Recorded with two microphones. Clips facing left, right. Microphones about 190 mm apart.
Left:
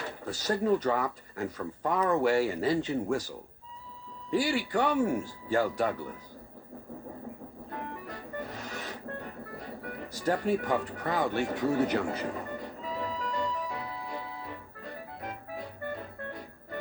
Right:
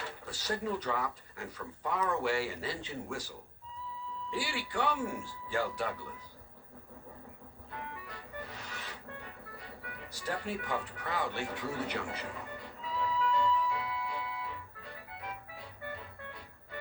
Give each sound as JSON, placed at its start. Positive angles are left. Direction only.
{"t": 0.0, "sound": "speech", "side_deg": 45}
{"t": 7.7, "sound": "music", "side_deg": 50}